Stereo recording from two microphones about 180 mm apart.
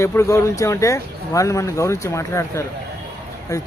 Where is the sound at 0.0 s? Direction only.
15° left (ahead or behind).